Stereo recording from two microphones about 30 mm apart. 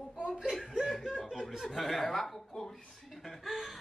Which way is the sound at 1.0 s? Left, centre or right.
Centre.